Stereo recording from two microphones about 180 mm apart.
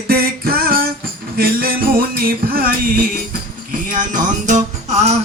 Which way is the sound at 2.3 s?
55° right (ahead or behind).